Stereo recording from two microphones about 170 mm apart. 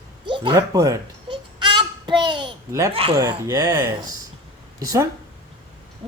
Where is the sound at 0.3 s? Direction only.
30° right (ahead or behind).